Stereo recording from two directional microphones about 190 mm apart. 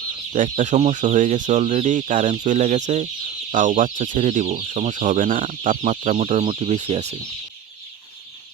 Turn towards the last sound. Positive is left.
turn(degrees=-30)  # may be behind; listen again after turning